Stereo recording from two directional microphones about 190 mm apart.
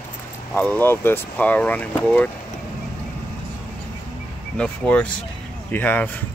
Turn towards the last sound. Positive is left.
turn(degrees=10)  # may be behind; listen again after turning